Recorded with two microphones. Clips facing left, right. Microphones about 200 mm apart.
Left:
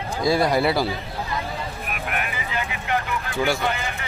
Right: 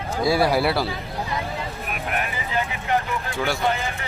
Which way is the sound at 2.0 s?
35° right (ahead or behind).